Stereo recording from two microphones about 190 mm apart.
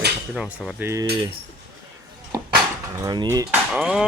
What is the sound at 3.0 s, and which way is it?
Dishes, 20° right (ahead or behind).